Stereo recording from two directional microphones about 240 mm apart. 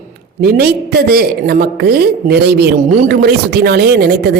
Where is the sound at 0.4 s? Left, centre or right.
Right.